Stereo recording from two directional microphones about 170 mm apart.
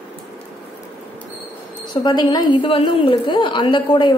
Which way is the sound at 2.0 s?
25° left (ahead or behind).